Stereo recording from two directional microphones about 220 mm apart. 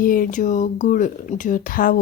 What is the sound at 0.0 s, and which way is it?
Speech, 40° left (ahead or behind).